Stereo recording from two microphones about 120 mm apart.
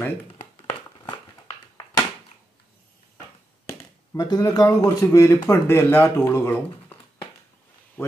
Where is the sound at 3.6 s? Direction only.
25° left (ahead or behind).